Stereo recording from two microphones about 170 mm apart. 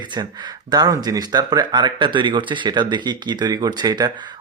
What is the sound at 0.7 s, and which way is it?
Speech, 20° right (ahead or behind).